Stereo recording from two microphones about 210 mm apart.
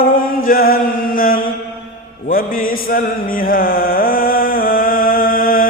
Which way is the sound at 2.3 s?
40° left (ahead or behind).